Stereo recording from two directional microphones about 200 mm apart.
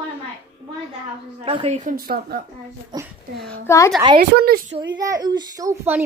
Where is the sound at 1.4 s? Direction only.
30° right (ahead or behind); by 2.4 s 50° right (ahead or behind).